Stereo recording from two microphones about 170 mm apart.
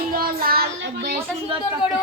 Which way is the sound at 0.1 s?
60° right (ahead or behind).